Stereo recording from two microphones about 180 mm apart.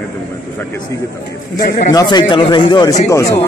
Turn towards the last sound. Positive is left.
turn(degrees=15)  # may be behind; listen again after turning